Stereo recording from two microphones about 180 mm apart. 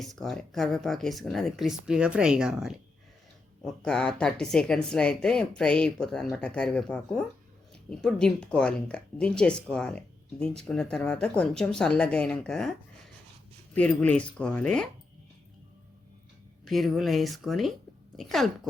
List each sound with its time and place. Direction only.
0.0 s speech: centre (ahead or behind)
13.7 s speech: 5° left (ahead or behind)
16.6 s speech: centre (ahead or behind)